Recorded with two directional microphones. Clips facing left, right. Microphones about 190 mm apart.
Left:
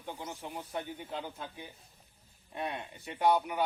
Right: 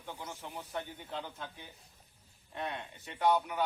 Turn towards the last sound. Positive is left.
turn(degrees=10)  # may be behind; listen again after turning